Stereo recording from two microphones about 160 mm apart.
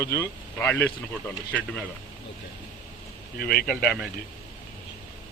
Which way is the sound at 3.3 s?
80° left.